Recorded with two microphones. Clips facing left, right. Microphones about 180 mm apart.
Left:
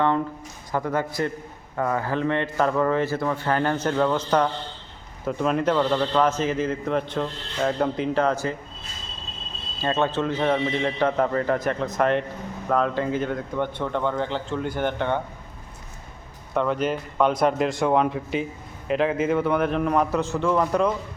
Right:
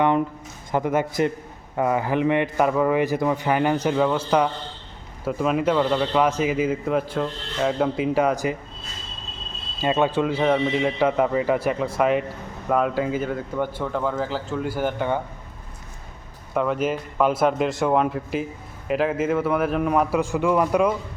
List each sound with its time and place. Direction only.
0.7 s a man's voice: 20° right (ahead or behind)
9.8 s speech: 15° right (ahead or behind)
16.6 s speech: 5° right (ahead or behind)